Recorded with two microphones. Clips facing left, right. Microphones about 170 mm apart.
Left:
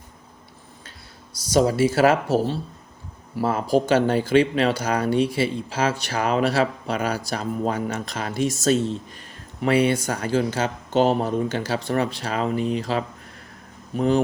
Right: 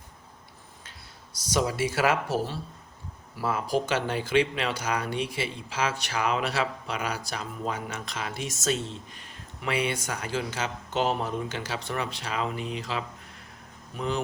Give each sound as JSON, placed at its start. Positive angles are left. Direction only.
{"t": 1.5, "sound": "speech", "side_deg": 30}